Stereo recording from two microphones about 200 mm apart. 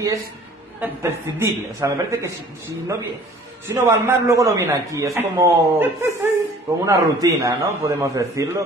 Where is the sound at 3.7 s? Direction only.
15° right (ahead or behind).